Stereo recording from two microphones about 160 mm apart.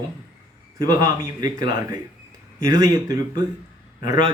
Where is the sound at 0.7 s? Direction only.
20° right (ahead or behind).